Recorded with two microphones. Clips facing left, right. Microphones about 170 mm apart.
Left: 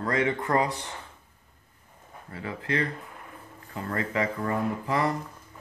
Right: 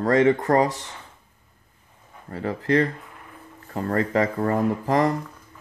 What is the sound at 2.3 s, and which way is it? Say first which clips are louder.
Speech: right 9 dB; 40° right (ahead or behind).